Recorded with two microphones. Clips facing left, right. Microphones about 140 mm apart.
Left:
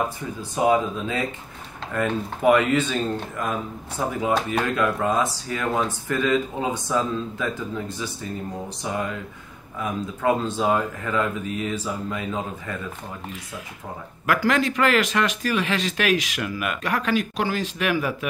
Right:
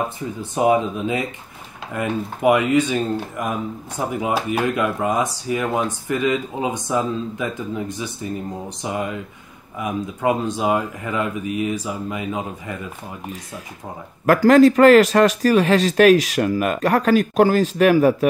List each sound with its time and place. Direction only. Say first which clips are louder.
0.4 s speech: right 3 dB; 20° right (ahead or behind)
14.2 s speech: right 10 dB; 40° right (ahead or behind)